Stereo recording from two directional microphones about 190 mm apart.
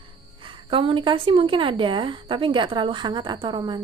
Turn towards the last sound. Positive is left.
turn(degrees=-25)  # may be behind; listen again after turning